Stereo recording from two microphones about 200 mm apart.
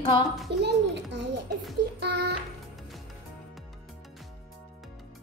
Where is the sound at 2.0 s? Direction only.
55° right (ahead or behind).